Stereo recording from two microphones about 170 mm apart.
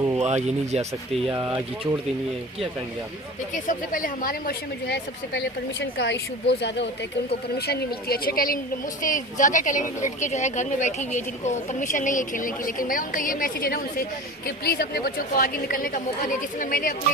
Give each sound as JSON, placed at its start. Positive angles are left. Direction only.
{"t": 0.2, "sound": "speech", "side_deg": -40}
{"t": 3.5, "sound": "speech", "side_deg": 50}
{"t": 8.0, "sound": "a woman's voice", "side_deg": 65}